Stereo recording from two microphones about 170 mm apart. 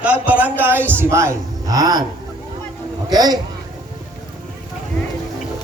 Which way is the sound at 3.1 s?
25° right (ahead or behind).